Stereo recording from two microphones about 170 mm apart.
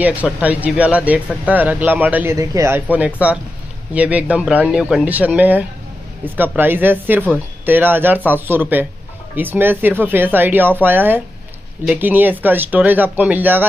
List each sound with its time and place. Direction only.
0.0 s speech: 10° right (ahead or behind)